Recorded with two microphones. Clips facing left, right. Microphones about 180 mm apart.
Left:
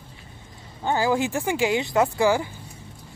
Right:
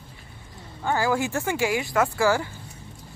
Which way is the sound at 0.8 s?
20° left (ahead or behind).